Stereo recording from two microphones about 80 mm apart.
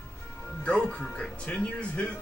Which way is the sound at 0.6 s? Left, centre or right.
Centre.